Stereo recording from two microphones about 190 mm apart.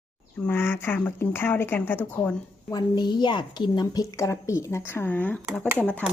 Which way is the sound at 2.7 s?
25° left (ahead or behind).